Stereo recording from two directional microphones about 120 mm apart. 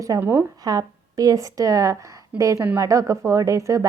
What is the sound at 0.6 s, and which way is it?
Speech, 30° right (ahead or behind).